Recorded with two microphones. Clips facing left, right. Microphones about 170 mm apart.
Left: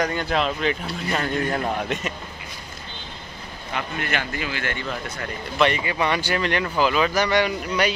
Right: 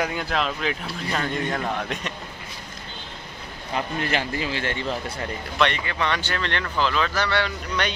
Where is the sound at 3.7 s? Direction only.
30° right (ahead or behind).